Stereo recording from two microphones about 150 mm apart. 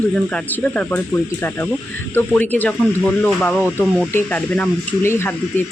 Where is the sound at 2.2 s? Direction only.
10° left (ahead or behind).